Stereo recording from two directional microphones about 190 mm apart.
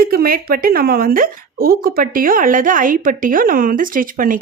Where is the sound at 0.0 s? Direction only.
50° right (ahead or behind).